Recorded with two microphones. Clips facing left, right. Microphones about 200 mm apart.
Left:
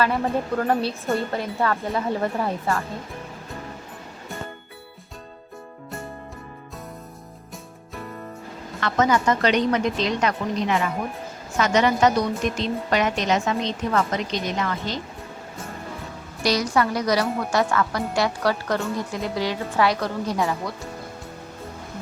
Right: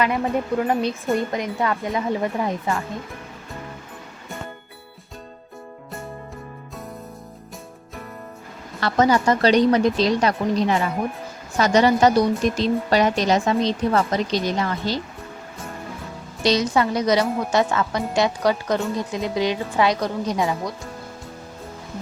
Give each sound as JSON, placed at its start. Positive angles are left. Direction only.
{"t": 0.0, "sound": "a woman's voice", "side_deg": -15}
{"t": 8.8, "sound": "speech", "side_deg": -35}
{"t": 16.4, "sound": "a woman's voice", "side_deg": -25}